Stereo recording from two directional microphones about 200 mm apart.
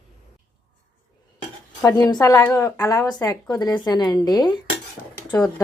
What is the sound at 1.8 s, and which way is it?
Speech, 15° left (ahead or behind).